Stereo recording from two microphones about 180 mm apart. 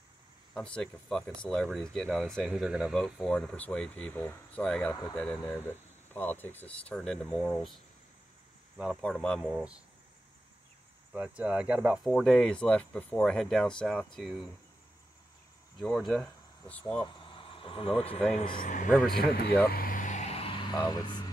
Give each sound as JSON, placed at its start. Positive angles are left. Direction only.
{"t": 0.6, "sound": "speech", "side_deg": 5}
{"t": 11.1, "sound": "speech", "side_deg": -5}
{"t": 15.8, "sound": "speech", "side_deg": 0}
{"t": 16.8, "sound": "speech", "side_deg": 25}
{"t": 18.6, "sound": "speech", "side_deg": 45}
{"t": 18.9, "sound": "speech", "side_deg": 0}
{"t": 19.6, "sound": "vehicle", "side_deg": 55}